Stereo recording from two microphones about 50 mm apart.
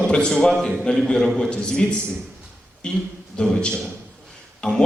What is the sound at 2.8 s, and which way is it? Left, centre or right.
A man's voice, centre.